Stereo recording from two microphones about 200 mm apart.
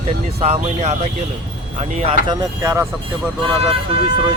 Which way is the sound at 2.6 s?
15° right (ahead or behind).